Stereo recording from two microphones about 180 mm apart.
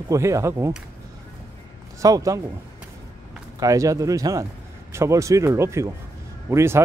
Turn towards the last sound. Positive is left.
turn(degrees=-15)  # may be behind; listen again after turning